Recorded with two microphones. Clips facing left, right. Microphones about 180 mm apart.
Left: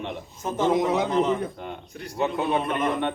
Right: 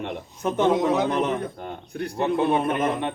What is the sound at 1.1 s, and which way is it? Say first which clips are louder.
A man's voice: left 1 dB; 65° right (ahead or behind).